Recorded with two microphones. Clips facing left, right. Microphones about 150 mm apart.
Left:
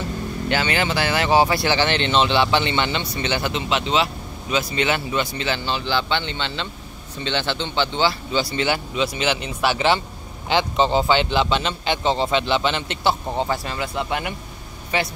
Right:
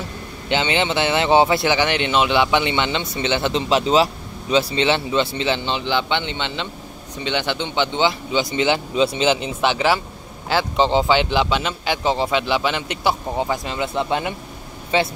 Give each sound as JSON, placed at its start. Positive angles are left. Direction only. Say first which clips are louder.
{"t": 0.5, "sound": "speech", "louder": "right 2 dB", "side_deg": -20}
{"t": 3.5, "sound": "a man's voice", "louder": "right 6 dB", "side_deg": -35}
{"t": 8.9, "sound": "speech", "louder": "right 5 dB", "side_deg": -30}
{"t": 10.5, "sound": "a man's voice", "louder": "right 1 dB", "side_deg": -5}